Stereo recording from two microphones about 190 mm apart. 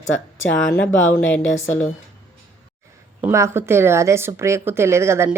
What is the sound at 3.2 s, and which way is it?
A woman's voice, 15° right (ahead or behind).